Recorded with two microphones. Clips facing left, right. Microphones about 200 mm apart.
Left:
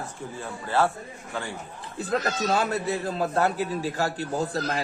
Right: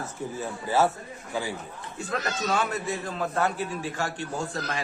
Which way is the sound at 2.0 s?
35° left (ahead or behind).